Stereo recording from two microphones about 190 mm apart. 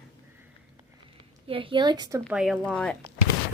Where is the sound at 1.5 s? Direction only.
25° right (ahead or behind).